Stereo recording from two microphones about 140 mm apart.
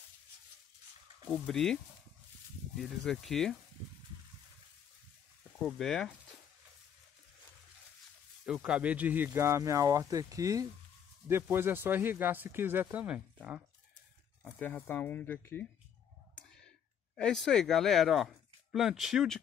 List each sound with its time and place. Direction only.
1.3 s speech: 5° left (ahead or behind)
2.8 s speech: centre (ahead or behind)
5.6 s speech: centre (ahead or behind)
8.5 s speech: 5° right (ahead or behind)
14.4 s speech: 15° left (ahead or behind)
17.2 s speech: 5° left (ahead or behind)